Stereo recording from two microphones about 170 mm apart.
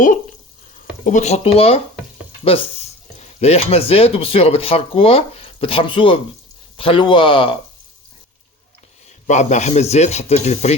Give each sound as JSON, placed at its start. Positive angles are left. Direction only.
{"t": 1.0, "sound": "speech", "side_deg": 45}
{"t": 9.0, "sound": "speech", "side_deg": 45}